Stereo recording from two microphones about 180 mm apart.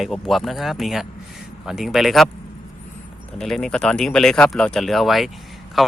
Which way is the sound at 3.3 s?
5° left (ahead or behind).